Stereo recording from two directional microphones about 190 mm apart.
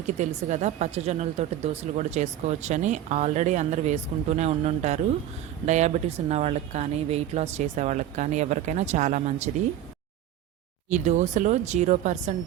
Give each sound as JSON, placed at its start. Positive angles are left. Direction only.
{"t": 0.2, "sound": "speech", "side_deg": -40}
{"t": 10.8, "sound": "speech", "side_deg": -40}